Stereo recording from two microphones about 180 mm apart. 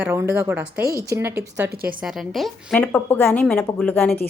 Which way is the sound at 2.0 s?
Centre (ahead or behind).